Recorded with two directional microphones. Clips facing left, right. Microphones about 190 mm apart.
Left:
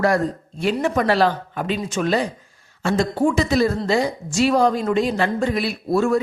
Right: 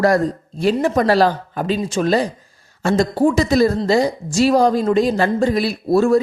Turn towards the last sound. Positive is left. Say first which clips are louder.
# right 4 dB
turn(degrees=-35)  # may be behind; listen again after turning